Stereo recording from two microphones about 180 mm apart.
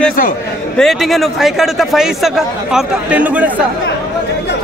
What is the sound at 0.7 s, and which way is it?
Speech, centre (ahead or behind).